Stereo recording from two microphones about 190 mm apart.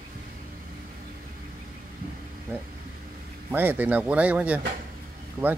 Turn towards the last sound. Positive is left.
turn(degrees=-20)  # may be behind; listen again after turning